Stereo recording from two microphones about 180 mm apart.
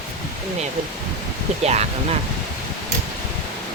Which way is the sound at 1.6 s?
35° right (ahead or behind).